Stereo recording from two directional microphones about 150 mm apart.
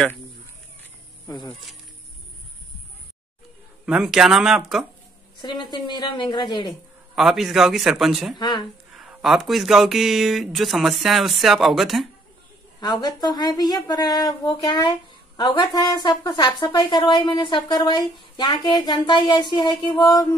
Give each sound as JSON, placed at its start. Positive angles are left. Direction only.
{"t": 3.8, "sound": "speech", "side_deg": -5}
{"t": 5.4, "sound": "speech", "side_deg": 30}
{"t": 7.2, "sound": "speech", "side_deg": 0}
{"t": 8.4, "sound": "speech", "side_deg": 30}
{"t": 8.9, "sound": "speech", "side_deg": -5}
{"t": 12.8, "sound": "speech", "side_deg": 25}